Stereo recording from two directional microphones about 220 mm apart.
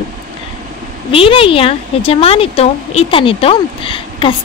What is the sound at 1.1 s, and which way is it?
A woman's voice, 25° left (ahead or behind).